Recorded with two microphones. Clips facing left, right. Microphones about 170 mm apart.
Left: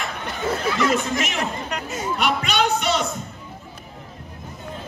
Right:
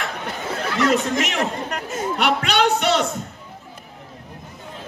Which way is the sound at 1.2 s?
70° right (ahead or behind).